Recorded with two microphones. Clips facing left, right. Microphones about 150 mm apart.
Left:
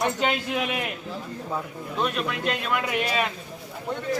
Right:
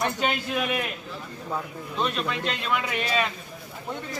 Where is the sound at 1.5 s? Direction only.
5° left (ahead or behind).